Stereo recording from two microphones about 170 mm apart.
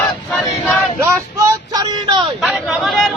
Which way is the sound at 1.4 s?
25° right (ahead or behind).